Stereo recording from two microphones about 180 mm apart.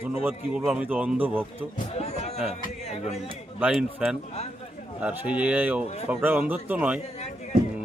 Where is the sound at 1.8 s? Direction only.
35° left (ahead or behind).